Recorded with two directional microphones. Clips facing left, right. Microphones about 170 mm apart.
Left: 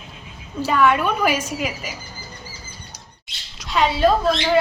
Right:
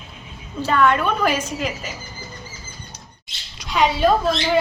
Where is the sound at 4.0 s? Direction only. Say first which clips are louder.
Left 1 dB; centre (ahead or behind).